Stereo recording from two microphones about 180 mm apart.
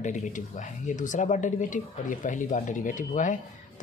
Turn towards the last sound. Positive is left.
turn(degrees=45)  # may be behind; listen again after turning